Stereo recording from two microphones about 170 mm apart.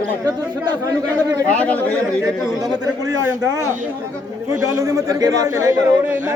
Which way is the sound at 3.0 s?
20° right (ahead or behind).